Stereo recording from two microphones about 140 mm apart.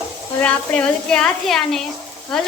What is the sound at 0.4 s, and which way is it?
A woman's voice, 5° left (ahead or behind).